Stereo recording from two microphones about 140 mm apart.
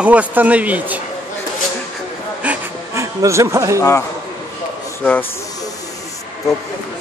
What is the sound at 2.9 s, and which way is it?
Speech, 20° right (ahead or behind).